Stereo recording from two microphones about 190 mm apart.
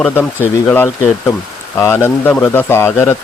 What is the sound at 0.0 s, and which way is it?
Speech, 10° left (ahead or behind).